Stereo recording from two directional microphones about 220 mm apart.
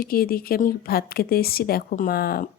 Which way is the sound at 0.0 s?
45° left (ahead or behind).